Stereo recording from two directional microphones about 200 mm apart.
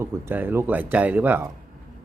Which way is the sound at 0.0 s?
10° right (ahead or behind).